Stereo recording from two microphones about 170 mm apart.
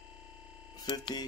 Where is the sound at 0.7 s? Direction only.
25° left (ahead or behind).